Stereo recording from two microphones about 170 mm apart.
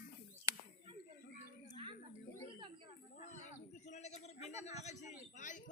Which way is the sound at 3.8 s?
40° left (ahead or behind).